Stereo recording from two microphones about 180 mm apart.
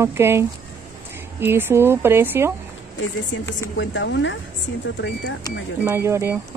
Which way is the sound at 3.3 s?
85° left.